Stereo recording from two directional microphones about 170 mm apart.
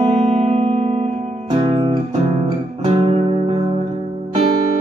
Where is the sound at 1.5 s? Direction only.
25° right (ahead or behind).